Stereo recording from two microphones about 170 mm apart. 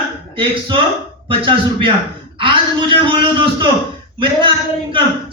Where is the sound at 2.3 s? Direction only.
30° right (ahead or behind).